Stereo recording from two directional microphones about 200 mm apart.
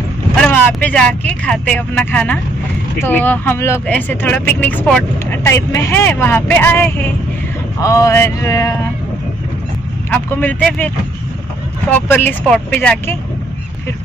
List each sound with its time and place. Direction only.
0.4 s speech: 5° left (ahead or behind)
10.1 s speech: 10° left (ahead or behind)
11.9 s speech: 10° left (ahead or behind)